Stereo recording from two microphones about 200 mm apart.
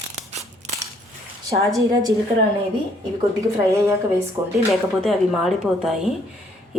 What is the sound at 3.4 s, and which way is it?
A woman's voice, 15° right (ahead or behind).